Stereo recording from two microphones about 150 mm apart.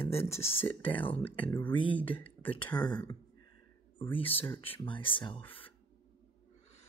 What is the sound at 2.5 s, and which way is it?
Speech, 30° left (ahead or behind).